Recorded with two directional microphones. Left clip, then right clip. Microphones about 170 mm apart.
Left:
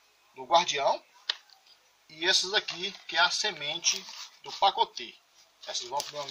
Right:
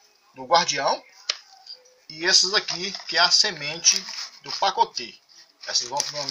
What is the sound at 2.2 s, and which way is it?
Speech, centre (ahead or behind).